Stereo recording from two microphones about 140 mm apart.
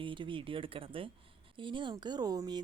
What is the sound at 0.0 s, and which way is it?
Speech, 35° right (ahead or behind).